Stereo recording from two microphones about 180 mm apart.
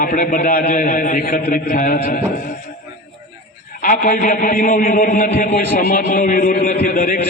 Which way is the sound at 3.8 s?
50° left (ahead or behind).